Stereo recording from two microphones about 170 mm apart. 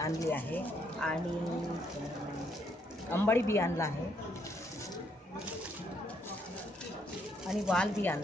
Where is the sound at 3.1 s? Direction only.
15° left (ahead or behind).